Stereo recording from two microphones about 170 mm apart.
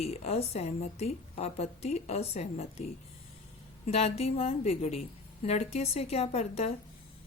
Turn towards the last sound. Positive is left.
turn(degrees=40)  # may be behind; listen again after turning